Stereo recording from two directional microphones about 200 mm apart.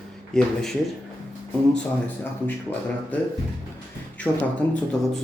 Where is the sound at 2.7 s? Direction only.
10° left (ahead or behind).